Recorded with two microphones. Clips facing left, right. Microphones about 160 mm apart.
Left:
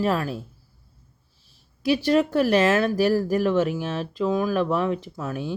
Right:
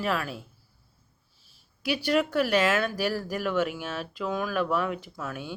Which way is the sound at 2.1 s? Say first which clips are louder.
Left 4 dB; 30° left (ahead or behind).